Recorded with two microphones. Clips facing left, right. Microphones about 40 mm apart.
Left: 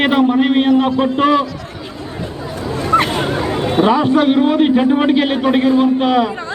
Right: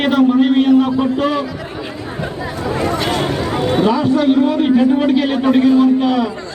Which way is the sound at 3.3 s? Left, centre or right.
Left.